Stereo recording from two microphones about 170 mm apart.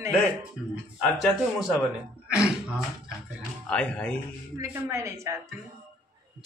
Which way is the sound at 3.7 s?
5° left (ahead or behind).